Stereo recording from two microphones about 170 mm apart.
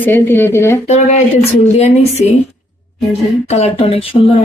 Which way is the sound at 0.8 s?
40° left (ahead or behind).